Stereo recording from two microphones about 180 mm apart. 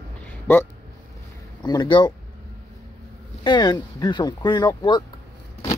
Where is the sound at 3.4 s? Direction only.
25° left (ahead or behind).